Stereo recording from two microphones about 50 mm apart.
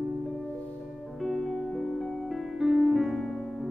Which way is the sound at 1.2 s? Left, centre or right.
Centre.